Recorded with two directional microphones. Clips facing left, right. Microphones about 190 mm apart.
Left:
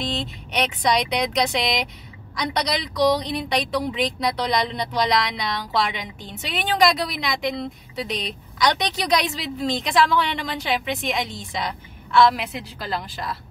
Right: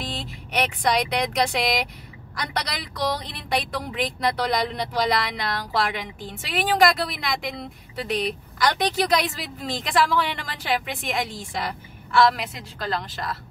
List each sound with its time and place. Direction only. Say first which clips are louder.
0.0 s speech: left 5 dB; 5° right (ahead or behind)